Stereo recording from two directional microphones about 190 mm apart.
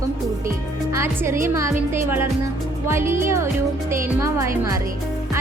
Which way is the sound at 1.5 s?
15° right (ahead or behind).